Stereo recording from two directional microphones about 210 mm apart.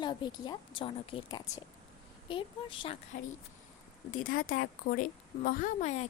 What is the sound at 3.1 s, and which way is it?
Speech, 40° left (ahead or behind).